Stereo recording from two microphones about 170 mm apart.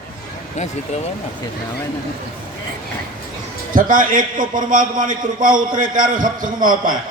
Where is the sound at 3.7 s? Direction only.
55° right (ahead or behind).